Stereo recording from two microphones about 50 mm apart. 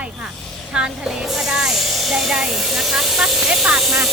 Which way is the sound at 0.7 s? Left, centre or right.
Centre.